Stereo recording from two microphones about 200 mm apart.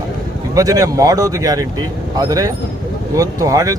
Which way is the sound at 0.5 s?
15° right (ahead or behind).